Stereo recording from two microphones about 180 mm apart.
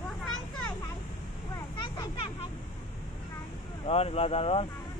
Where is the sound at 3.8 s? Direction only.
35° left (ahead or behind).